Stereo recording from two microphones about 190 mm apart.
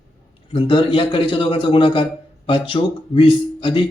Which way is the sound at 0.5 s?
25° left (ahead or behind).